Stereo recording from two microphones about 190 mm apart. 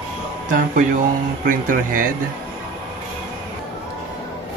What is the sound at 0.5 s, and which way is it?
Speech, 45° right (ahead or behind).